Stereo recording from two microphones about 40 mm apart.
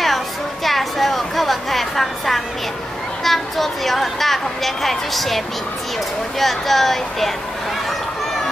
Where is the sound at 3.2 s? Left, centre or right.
Centre.